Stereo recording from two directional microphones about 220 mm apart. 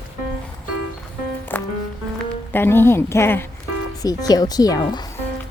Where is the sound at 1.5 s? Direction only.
10° left (ahead or behind).